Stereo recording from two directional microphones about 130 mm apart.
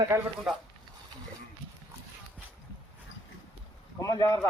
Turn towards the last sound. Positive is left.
turn(degrees=30)  # may be behind; listen again after turning